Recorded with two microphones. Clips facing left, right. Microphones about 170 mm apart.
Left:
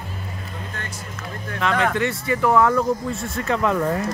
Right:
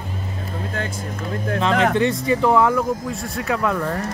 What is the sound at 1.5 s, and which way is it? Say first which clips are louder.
Speech: right 3 dB; 25° right (ahead or behind).